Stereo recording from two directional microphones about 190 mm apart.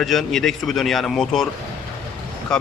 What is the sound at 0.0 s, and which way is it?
Speech, centre (ahead or behind).